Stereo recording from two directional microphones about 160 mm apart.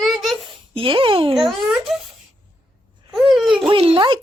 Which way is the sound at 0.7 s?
35° right (ahead or behind).